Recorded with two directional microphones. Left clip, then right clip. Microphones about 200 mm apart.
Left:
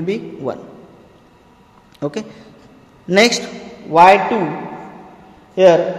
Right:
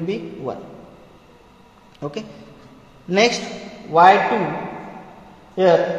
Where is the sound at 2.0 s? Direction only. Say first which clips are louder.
Left 5 dB; 45° left (ahead or behind).